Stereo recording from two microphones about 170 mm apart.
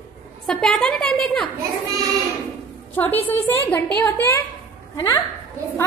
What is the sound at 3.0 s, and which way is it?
A woman's voice, 10° left (ahead or behind).